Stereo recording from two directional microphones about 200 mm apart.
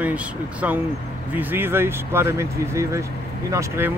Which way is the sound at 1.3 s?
10° right (ahead or behind).